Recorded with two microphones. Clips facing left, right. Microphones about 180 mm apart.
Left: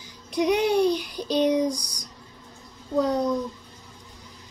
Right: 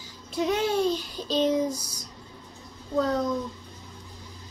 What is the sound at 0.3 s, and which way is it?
Child singing, 15° left (ahead or behind).